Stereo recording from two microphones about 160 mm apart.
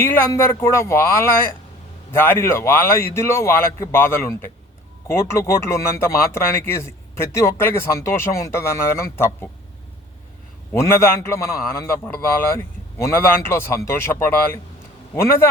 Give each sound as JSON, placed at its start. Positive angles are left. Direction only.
{"t": 0.0, "sound": "speech", "side_deg": 15}
{"t": 10.7, "sound": "speech", "side_deg": 15}